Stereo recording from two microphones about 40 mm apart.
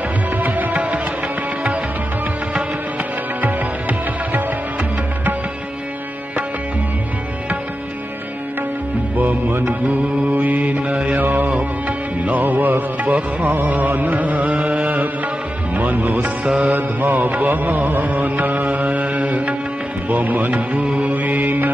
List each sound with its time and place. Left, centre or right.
0.4 s music: right
0.7 s music: right
9.1 s music: right
9.7 s mantra: right
11.1 s music: right
14.5 s music: right
16.4 s music: right
16.7 s mantra: right
17.3 s music: right
20.1 s speech: right
20.8 s music: right
21.1 s music: right